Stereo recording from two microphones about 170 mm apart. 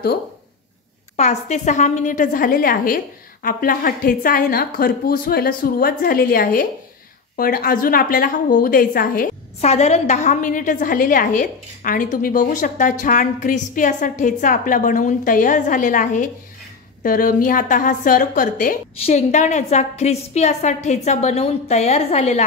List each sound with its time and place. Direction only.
1.1 s a woman's voice: 40° left (ahead or behind); by 9.3 s 55° left (ahead or behind)
9.6 s a woman's voice: 40° left (ahead or behind)